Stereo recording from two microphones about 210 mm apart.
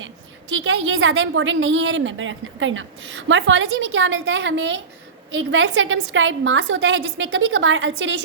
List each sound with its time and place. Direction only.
0.5 s a woman's voice: 70° right (ahead or behind)